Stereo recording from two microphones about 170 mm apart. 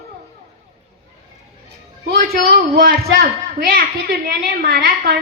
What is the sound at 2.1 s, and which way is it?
A man's voice, 65° right (ahead or behind).